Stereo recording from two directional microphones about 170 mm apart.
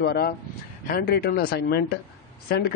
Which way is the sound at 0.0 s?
70° left (ahead or behind).